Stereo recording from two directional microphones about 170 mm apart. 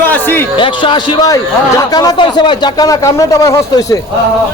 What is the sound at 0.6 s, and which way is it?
A man's voice, 30° left (ahead or behind).